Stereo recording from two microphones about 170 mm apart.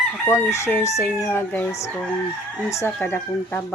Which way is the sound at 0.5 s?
15° left (ahead or behind).